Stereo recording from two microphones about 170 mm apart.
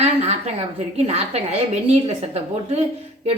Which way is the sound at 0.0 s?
40° right (ahead or behind).